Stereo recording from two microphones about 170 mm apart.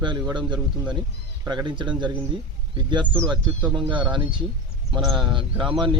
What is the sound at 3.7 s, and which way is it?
Speech, 30° right (ahead or behind).